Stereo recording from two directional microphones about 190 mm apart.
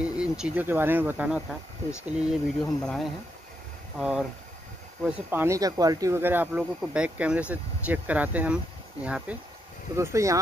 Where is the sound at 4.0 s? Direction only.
5° right (ahead or behind).